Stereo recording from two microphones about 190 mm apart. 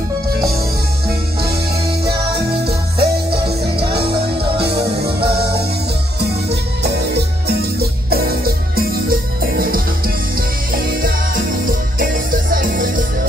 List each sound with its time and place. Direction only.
3.0 s music: 55° right (ahead or behind)
12.0 s music: 45° right (ahead or behind)